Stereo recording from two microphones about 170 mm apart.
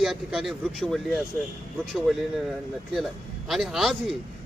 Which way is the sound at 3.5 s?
Centre (ahead or behind).